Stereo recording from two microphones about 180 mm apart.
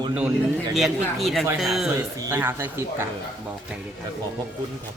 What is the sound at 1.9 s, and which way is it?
Speech, 15° right (ahead or behind).